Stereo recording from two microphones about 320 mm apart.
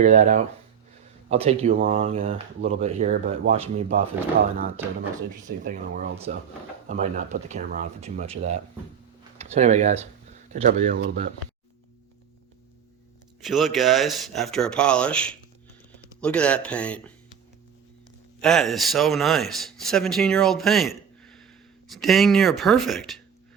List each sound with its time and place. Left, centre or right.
0.0 s speech: right
5.5 s speech: right
13.4 s speech: centre
18.3 s speech: centre